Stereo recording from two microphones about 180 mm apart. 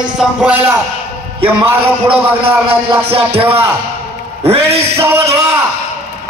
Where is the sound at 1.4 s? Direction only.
30° right (ahead or behind).